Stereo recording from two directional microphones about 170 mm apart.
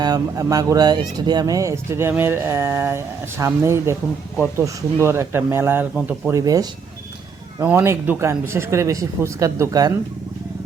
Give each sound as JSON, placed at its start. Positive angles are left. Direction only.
{"t": 0.0, "sound": "speech", "side_deg": -20}
{"t": 6.3, "sound": "speech", "side_deg": -20}